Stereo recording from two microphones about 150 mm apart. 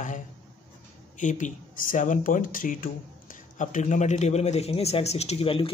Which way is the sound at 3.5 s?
55° left (ahead or behind).